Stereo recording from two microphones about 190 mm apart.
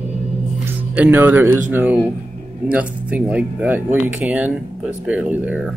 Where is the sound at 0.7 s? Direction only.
10° right (ahead or behind).